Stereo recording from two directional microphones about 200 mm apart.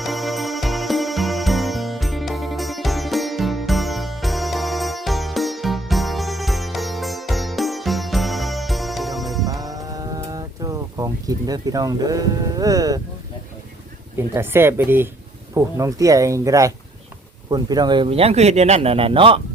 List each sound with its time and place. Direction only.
0.0 s music: centre (ahead or behind)
9.6 s a sound: 20° right (ahead or behind)
14.2 s speech: 10° right (ahead or behind)